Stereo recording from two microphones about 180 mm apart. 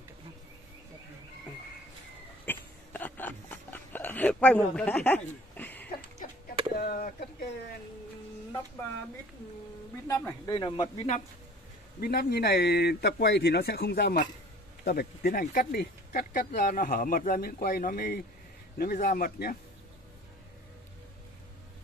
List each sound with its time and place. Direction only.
2.4 s a sound: 10° left (ahead or behind)
6.7 s chop: 55° left (ahead or behind)
10.0 s speech: 15° left (ahead or behind)
10.5 s speech: 30° left (ahead or behind)
12.0 s speech: 60° left (ahead or behind)